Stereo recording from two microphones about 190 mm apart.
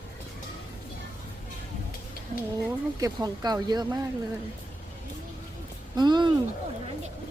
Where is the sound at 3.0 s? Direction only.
20° right (ahead or behind).